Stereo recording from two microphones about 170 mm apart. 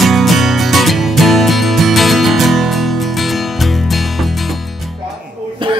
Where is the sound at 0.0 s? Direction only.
Centre (ahead or behind).